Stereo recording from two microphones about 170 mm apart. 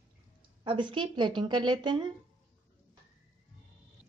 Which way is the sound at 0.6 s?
30° right (ahead or behind).